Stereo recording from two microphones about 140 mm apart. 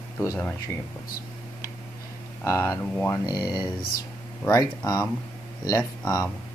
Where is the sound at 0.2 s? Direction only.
20° left (ahead or behind).